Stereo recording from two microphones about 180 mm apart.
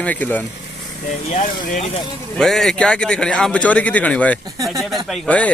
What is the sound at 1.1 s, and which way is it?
Speech, 40° left (ahead or behind).